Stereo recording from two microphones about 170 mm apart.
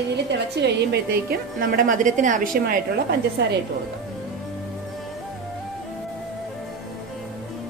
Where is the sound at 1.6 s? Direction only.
50° right (ahead or behind).